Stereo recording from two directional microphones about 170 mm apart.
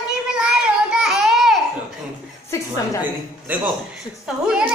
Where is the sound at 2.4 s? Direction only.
20° left (ahead or behind).